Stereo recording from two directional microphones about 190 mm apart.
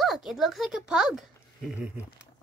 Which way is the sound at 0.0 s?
Centre (ahead or behind).